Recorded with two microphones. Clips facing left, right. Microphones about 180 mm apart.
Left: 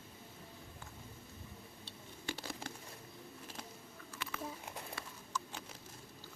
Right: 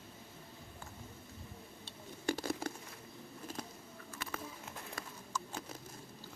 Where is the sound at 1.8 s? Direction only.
45° right (ahead or behind).